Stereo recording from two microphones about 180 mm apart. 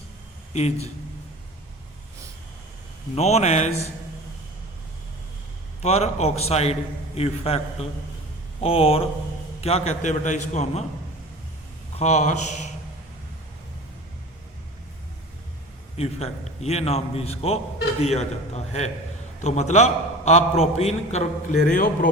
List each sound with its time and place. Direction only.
3.2 s a man's voice: 35° left (ahead or behind)
5.8 s a man's voice: 40° left (ahead or behind)
11.9 s a man's voice: 40° left (ahead or behind)
16.0 s a man's voice: 35° left (ahead or behind)